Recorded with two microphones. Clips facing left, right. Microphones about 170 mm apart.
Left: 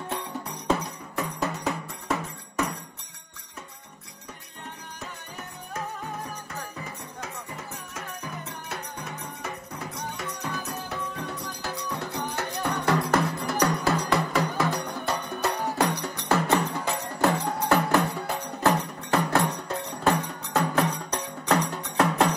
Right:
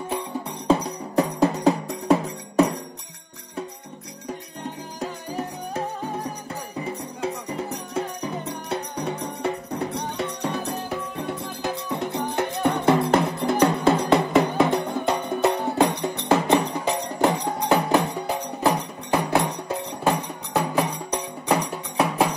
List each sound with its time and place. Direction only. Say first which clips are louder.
0.7 s music: right 6 dB; 35° right (ahead or behind)
5.0 s music: right 12 dB; 30° right (ahead or behind); by 22.3 s 10° right (ahead or behind)